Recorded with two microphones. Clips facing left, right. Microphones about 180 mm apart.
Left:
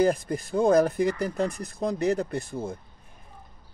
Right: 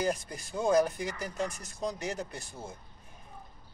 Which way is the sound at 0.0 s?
55° left (ahead or behind).